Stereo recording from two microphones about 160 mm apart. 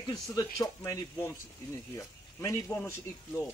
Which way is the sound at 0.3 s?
25° left (ahead or behind).